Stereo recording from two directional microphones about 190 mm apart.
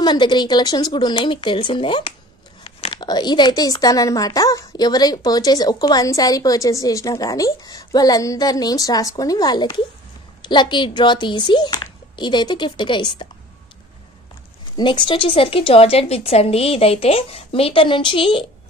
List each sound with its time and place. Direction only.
0.0 s speech: 25° left (ahead or behind)
14.8 s speech: 25° left (ahead or behind)